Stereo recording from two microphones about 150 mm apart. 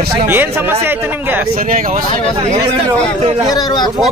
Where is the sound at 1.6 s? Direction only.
65° right (ahead or behind).